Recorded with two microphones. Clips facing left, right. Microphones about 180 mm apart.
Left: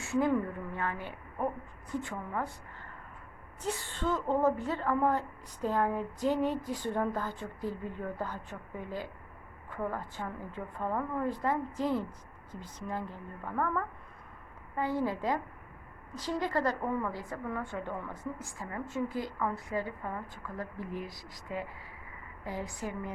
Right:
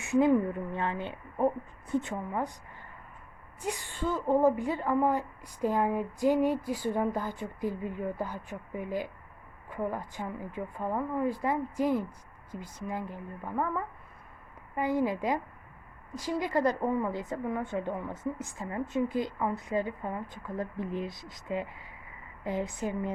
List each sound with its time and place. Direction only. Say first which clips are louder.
0.0 s a woman's voice: right 5 dB; 15° right (ahead or behind)